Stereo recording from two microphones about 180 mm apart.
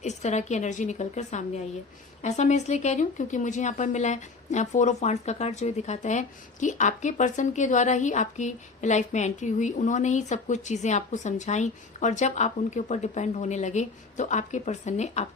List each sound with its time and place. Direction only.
0.0 s speech: 40° left (ahead or behind)